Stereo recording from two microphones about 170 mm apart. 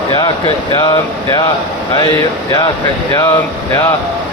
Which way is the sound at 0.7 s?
25° left (ahead or behind).